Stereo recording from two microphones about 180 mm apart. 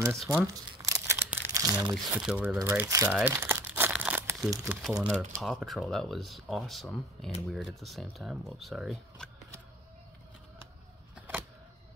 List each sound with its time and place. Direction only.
0.3 s crumpling: 15° right (ahead or behind)
2.1 s speech: 5° right (ahead or behind)
3.3 s crumpling: 10° right (ahead or behind)
4.8 s speech: 5° right (ahead or behind)